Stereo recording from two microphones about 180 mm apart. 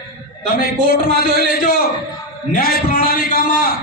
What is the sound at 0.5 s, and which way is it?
A man's voice, 55° left (ahead or behind).